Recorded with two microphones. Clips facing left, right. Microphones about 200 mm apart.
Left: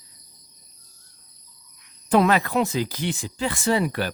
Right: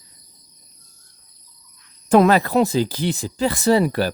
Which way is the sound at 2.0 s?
45° right (ahead or behind).